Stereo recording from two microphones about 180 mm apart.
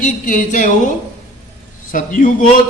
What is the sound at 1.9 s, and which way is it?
Speech, 45° left (ahead or behind).